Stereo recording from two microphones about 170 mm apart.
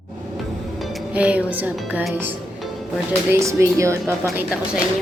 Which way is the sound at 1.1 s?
10° right (ahead or behind).